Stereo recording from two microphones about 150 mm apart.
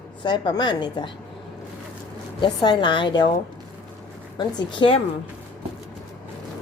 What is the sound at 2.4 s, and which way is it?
Speech, 30° left (ahead or behind).